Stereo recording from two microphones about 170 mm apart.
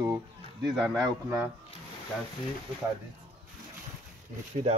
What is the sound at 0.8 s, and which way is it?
Speech, 5° right (ahead or behind).